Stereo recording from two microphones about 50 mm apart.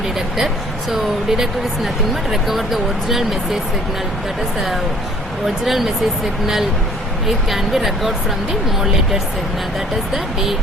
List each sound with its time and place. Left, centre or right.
0.9 s speech: centre
5.6 s speech: centre
7.3 s speech: centre